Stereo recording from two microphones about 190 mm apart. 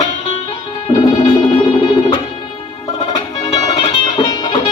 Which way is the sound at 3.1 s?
25° left (ahead or behind).